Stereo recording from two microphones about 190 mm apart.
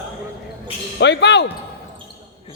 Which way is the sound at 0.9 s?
65° left (ahead or behind).